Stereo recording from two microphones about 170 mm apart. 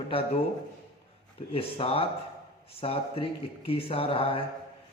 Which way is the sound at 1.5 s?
35° left (ahead or behind).